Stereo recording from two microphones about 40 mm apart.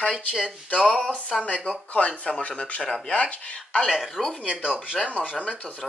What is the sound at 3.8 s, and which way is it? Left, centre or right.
Speech, centre.